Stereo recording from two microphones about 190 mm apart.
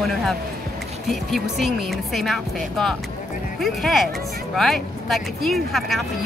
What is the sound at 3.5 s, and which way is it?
Speech, centre (ahead or behind).